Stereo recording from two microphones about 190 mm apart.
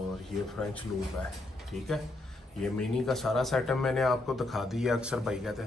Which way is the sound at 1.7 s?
Centre (ahead or behind).